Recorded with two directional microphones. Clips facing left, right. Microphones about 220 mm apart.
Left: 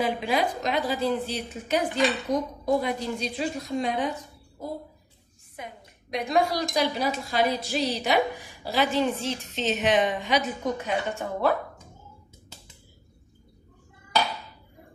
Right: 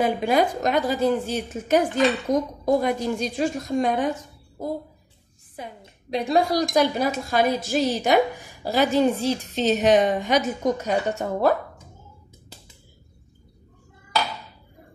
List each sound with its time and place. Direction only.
0.0 s a woman's voice: 45° right (ahead or behind)
5.6 s a woman's voice: 30° right (ahead or behind)
6.7 s a woman's voice: 50° right (ahead or behind)